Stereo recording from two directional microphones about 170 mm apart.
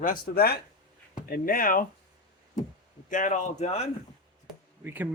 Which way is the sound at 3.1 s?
50° left (ahead or behind).